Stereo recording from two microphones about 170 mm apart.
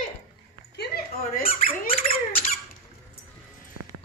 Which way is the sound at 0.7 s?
60° left (ahead or behind).